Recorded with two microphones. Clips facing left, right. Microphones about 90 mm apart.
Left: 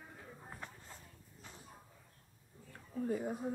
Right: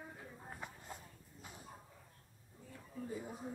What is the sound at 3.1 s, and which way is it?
Speech, 60° left (ahead or behind).